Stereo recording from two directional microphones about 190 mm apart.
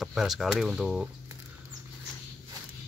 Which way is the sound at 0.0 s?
Centre (ahead or behind).